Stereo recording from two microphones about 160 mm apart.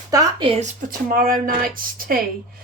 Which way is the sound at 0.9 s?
60° right (ahead or behind).